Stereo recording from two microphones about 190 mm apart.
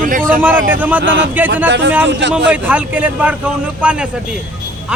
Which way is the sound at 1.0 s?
75° right (ahead or behind).